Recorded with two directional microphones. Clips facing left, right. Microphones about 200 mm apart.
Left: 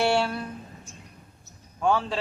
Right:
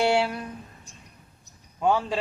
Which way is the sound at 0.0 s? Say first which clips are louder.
Right 1 dB; 15° right (ahead or behind).